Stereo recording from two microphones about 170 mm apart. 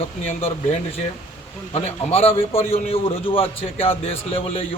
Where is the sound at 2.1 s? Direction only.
35° left (ahead or behind).